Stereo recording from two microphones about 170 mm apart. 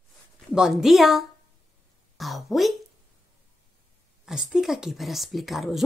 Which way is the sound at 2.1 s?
Centre (ahead or behind).